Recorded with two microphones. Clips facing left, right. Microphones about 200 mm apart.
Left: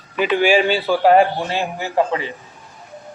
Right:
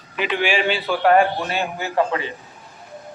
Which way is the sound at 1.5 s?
20° left (ahead or behind).